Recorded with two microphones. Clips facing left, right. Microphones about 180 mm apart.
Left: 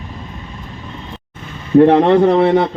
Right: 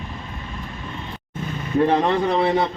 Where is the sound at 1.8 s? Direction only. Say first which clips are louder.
Left 8 dB; 60° left (ahead or behind).